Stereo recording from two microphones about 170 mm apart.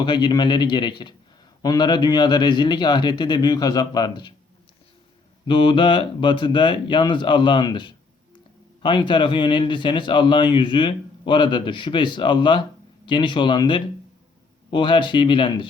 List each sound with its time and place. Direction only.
0.0 s speech: 25° left (ahead or behind)
5.5 s speech: 30° left (ahead or behind)